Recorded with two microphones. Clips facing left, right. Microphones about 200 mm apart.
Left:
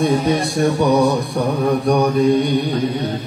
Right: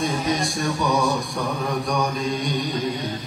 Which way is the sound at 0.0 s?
60° left (ahead or behind).